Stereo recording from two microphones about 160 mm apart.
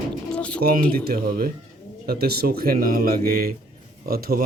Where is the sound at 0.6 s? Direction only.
60° right (ahead or behind).